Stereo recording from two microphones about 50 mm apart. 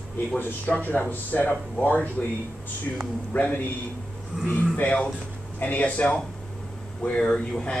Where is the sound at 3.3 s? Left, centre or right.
Left.